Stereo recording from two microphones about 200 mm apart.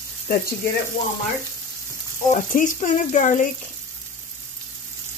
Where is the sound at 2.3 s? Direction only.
40° left (ahead or behind).